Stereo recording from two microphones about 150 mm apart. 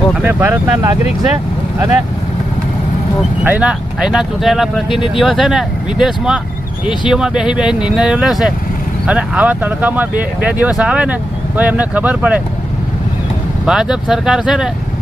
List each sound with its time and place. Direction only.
0.2 s speech: 10° right (ahead or behind)
3.4 s speech: 10° right (ahead or behind)
13.7 s speech: 5° right (ahead or behind)